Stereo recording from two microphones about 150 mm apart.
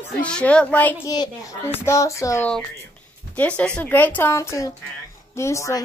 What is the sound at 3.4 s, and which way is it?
A woman's voice, 5° left (ahead or behind).